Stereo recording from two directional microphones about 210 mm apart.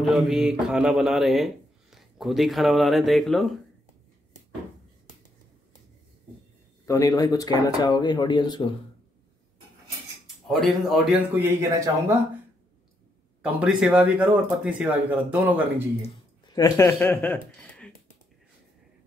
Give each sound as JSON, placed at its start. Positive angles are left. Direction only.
{"t": 0.0, "sound": "speech", "side_deg": 0}
{"t": 6.9, "sound": "speech", "side_deg": 15}
{"t": 10.2, "sound": "speech", "side_deg": 0}
{"t": 13.4, "sound": "speech", "side_deg": -5}
{"t": 16.5, "sound": "speech", "side_deg": 15}